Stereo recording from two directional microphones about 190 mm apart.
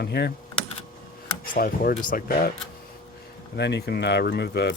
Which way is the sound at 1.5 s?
50° left (ahead or behind).